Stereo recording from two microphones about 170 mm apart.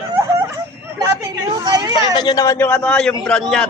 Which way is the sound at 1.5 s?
25° right (ahead or behind).